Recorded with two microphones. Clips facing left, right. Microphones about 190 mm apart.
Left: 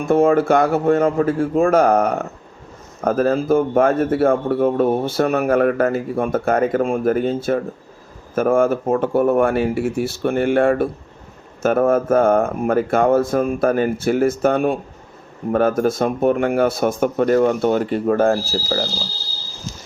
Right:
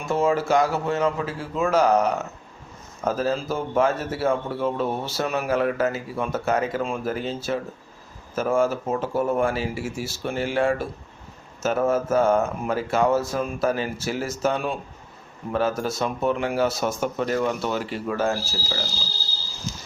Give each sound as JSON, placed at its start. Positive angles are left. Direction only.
{"t": 0.0, "sound": "speech", "side_deg": 55}